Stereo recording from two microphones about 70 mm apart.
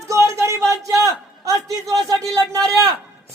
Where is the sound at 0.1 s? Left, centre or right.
Right.